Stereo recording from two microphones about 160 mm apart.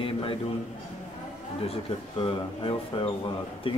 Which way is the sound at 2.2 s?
30° left (ahead or behind).